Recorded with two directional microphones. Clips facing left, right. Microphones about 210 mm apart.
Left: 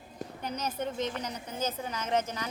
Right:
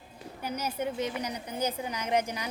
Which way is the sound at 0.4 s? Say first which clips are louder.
Right 2 dB; 10° right (ahead or behind).